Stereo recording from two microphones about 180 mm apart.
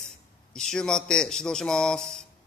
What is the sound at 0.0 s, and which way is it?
A man's voice, 5° left (ahead or behind).